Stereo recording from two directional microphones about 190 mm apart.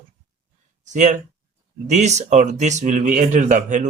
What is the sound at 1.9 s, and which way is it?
Speech, 35° right (ahead or behind).